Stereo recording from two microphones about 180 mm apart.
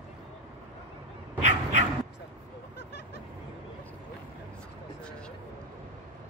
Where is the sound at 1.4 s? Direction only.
40° right (ahead or behind).